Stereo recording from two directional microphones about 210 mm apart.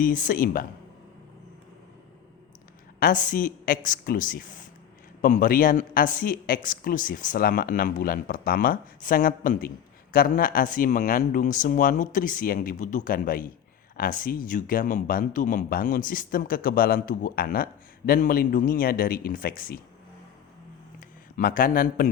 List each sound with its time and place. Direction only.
0.0 s speech: 40° left (ahead or behind)
3.0 s speech: 40° left (ahead or behind)
21.3 s speech: 40° left (ahead or behind)